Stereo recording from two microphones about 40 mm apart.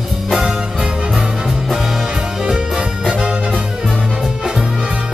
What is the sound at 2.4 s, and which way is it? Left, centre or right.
Music, centre.